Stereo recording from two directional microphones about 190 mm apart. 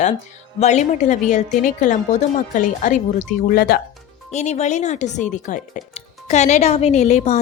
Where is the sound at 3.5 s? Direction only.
55° left (ahead or behind).